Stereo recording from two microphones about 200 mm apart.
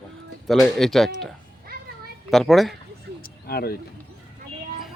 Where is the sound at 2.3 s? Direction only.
Centre (ahead or behind).